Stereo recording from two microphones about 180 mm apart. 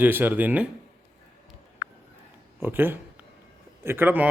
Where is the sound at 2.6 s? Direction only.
10° right (ahead or behind).